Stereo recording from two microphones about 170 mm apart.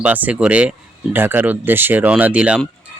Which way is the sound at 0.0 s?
10° right (ahead or behind).